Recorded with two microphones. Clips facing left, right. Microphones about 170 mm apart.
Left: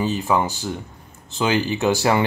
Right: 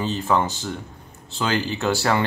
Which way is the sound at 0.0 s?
10° left (ahead or behind).